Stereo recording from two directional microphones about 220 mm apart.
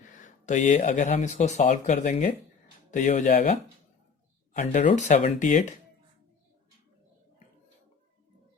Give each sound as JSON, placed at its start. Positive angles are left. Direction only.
{"t": 0.2, "sound": "speech", "side_deg": 35}